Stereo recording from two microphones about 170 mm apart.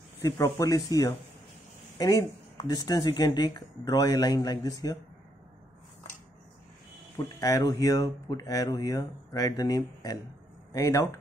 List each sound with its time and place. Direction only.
0.2 s speech: 20° left (ahead or behind)
2.6 s speech: 25° left (ahead or behind)
7.3 s speech: 20° left (ahead or behind)